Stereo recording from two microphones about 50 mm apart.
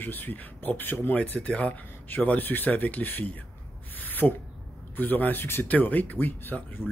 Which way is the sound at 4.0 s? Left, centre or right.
Left.